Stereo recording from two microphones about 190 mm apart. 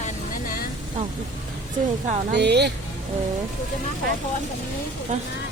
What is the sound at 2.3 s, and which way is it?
Speech, 60° right (ahead or behind).